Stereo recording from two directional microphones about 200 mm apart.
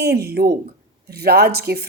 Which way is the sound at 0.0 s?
55° right (ahead or behind).